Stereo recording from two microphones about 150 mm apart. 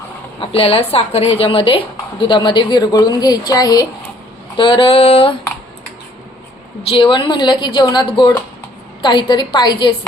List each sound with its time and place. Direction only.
0.3 s speech: 40° left (ahead or behind)
6.8 s speech: 35° left (ahead or behind)